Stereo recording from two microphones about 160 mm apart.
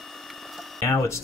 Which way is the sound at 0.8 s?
20° left (ahead or behind).